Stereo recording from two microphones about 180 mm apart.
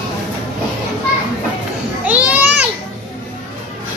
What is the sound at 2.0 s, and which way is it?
Children playing, 10° right (ahead or behind).